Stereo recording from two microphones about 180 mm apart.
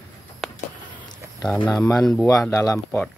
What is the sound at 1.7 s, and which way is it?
Speech, 15° left (ahead or behind).